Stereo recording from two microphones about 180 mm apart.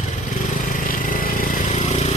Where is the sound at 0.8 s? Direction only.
50° left (ahead or behind).